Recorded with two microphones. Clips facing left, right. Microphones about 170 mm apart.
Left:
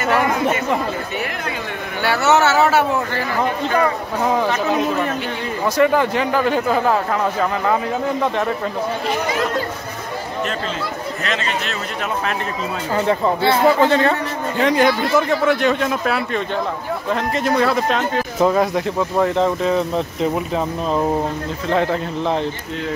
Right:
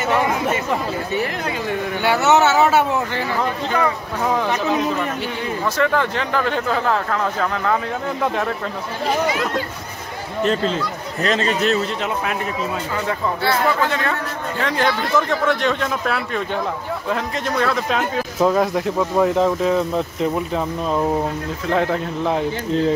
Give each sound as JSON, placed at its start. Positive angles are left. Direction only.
{"t": 2.0, "sound": "speech", "side_deg": -20}
{"t": 5.8, "sound": "speech", "side_deg": 10}
{"t": 11.2, "sound": "a man's voice", "side_deg": -40}
{"t": 12.9, "sound": "speech", "side_deg": 30}
{"t": 14.6, "sound": "speech", "side_deg": 15}